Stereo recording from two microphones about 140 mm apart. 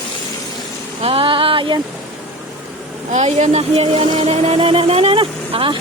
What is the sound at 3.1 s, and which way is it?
Music, 55° right (ahead or behind).